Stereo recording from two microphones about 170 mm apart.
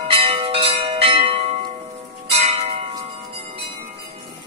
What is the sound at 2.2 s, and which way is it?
Church bell, 35° right (ahead or behind).